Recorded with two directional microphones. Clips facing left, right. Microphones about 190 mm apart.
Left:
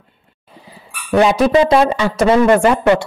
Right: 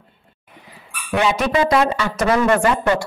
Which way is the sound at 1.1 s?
35° left (ahead or behind).